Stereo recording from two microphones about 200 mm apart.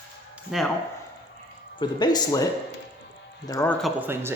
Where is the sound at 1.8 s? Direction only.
20° left (ahead or behind).